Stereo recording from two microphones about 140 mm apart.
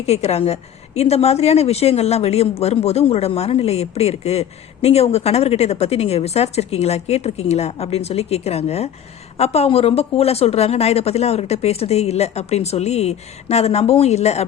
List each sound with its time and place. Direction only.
0.0 s a woman's voice: 50° left (ahead or behind)